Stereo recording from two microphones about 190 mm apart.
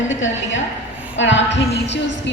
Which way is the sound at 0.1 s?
85° left.